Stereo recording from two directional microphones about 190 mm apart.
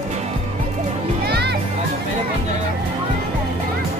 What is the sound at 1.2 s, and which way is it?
Music, 60° right (ahead or behind).